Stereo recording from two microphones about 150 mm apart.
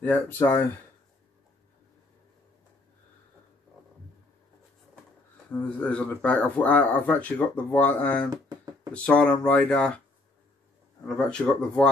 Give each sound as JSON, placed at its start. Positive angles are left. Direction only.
{"t": 0.0, "sound": "speech", "side_deg": 10}
{"t": 5.8, "sound": "speech", "side_deg": 10}
{"t": 8.3, "sound": "a sound", "side_deg": -20}
{"t": 8.9, "sound": "speech", "side_deg": 10}
{"t": 11.1, "sound": "speech", "side_deg": 5}